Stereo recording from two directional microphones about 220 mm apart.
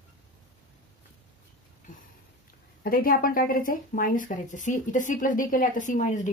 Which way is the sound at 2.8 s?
40° left (ahead or behind).